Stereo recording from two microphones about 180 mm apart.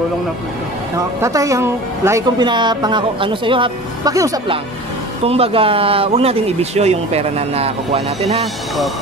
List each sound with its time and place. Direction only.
0.9 s speech: 20° right (ahead or behind)
5.2 s speech: 35° right (ahead or behind)